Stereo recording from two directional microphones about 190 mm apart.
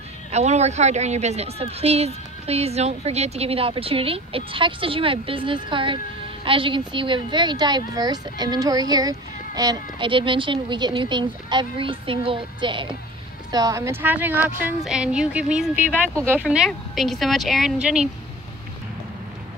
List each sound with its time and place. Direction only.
0.3 s a woman's voice: 35° right (ahead or behind); by 18.1 s 5° right (ahead or behind)